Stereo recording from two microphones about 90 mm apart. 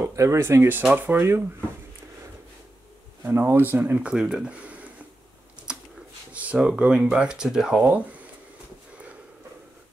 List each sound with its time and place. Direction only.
0.0 s speech: 35° right (ahead or behind)
3.3 s speech: 25° right (ahead or behind)
4.1 s speech: 10° right (ahead or behind)
5.7 s a sound: 10° right (ahead or behind)
6.3 s speech: 15° right (ahead or behind)
8.9 s sniff: 15° right (ahead or behind)